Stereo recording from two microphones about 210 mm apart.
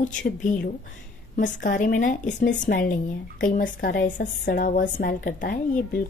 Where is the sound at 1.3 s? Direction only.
40° left (ahead or behind).